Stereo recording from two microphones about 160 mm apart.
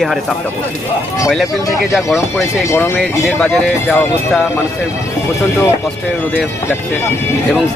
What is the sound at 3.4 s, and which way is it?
Speech, 5° left (ahead or behind).